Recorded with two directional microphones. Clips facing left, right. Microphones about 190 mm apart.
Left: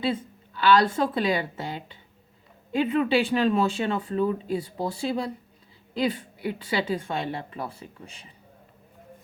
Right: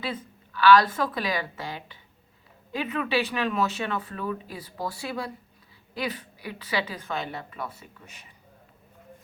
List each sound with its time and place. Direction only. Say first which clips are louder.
0.0 s speech: left 6 dB; 25° left (ahead or behind)